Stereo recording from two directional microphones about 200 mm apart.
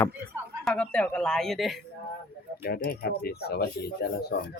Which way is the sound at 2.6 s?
50° left (ahead or behind).